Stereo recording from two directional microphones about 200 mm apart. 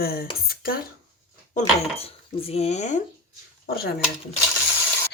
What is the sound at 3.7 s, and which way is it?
Speech, 50° left (ahead or behind).